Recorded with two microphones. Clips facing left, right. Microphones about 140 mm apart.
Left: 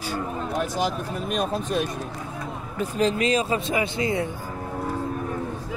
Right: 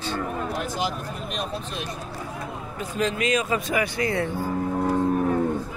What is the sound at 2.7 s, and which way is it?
Speech, 35° left (ahead or behind).